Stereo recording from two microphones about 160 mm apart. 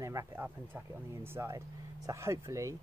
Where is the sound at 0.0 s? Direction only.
20° right (ahead or behind).